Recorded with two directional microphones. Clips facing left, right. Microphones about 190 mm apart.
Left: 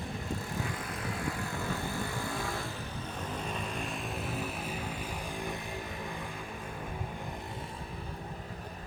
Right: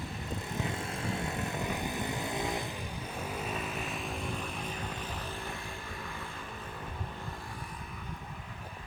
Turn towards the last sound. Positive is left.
turn(degrees=25)  # may be behind; listen again after turning